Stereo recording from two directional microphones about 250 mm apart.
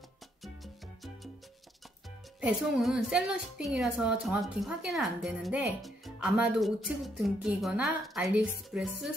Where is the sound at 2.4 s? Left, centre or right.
Centre.